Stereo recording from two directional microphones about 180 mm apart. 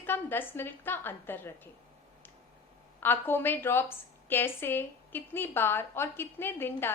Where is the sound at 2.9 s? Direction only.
10° left (ahead or behind).